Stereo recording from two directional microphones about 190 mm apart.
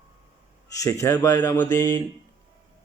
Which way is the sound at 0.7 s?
15° left (ahead or behind).